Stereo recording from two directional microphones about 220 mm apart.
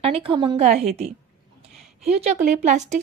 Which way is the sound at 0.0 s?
25° right (ahead or behind).